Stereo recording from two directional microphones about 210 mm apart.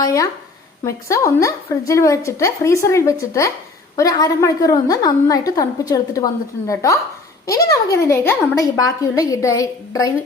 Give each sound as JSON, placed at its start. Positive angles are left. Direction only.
{"t": 0.0, "sound": "a woman's voice", "side_deg": 15}